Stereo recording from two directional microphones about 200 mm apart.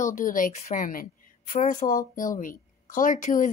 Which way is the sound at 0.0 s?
40° left (ahead or behind).